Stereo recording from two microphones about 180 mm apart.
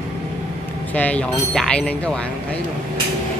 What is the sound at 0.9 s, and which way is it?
Speech, 10° left (ahead or behind).